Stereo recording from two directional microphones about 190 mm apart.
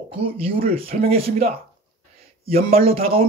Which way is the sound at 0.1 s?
30° right (ahead or behind).